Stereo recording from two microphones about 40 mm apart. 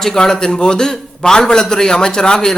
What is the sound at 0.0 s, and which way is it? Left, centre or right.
A man's voice, centre.